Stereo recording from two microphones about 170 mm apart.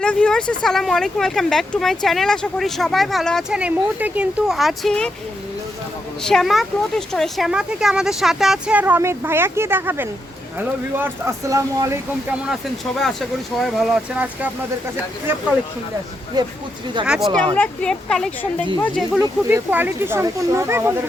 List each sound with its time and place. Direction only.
0.0 s a woman's voice: 5° left (ahead or behind)
3.6 s a woman's voice: 10° right (ahead or behind)
6.2 s a woman's voice: centre (ahead or behind); by 12.4 s 15° right (ahead or behind)
12.4 s a woman's voice: centre (ahead or behind)
16.4 s speech: 25° right (ahead or behind)
17.1 s a woman's voice: centre (ahead or behind)
19.2 s speech: 15° right (ahead or behind)